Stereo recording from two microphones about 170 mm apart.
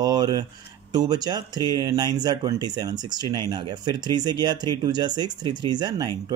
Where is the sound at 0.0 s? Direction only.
25° right (ahead or behind).